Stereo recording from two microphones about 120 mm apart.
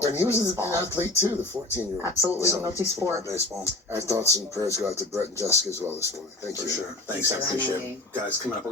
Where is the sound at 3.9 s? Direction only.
25° right (ahead or behind).